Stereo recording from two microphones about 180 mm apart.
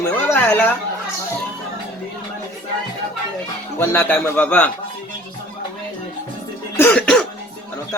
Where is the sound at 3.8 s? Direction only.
15° left (ahead or behind).